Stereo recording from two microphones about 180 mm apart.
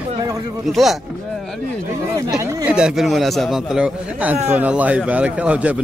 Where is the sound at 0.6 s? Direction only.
Centre (ahead or behind).